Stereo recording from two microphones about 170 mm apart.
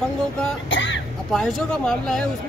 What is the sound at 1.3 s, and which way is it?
Speech, 5° left (ahead or behind).